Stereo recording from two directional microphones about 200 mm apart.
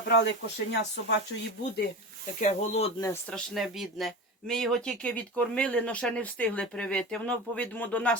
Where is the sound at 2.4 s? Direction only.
35° left (ahead or behind).